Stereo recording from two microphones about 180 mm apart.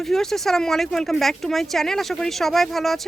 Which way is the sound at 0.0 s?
Centre (ahead or behind).